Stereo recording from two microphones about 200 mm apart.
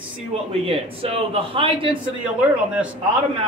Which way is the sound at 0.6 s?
30° right (ahead or behind).